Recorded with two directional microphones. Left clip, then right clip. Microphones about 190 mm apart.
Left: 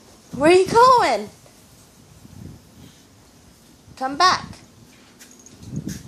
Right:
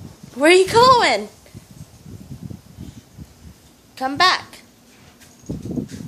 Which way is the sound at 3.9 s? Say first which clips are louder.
Right 1 dB; 5° right (ahead or behind).